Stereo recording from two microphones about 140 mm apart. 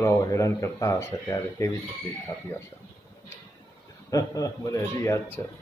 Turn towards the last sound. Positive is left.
turn(degrees=20)  # may be behind; listen again after turning